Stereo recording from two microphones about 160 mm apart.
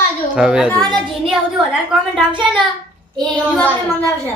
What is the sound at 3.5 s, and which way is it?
Speech, 5° left (ahead or behind).